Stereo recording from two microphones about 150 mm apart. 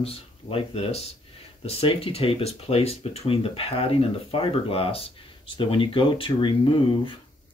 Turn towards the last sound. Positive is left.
turn(degrees=35)  # may be behind; listen again after turning